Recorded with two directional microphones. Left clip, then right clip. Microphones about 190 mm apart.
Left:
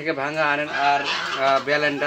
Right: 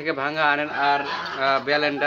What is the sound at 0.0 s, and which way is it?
A man's voice, 20° left (ahead or behind).